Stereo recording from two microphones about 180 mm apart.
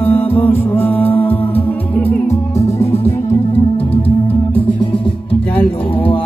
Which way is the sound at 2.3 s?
35° left (ahead or behind).